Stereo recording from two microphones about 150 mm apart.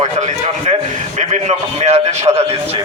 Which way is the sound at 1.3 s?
50° right (ahead or behind).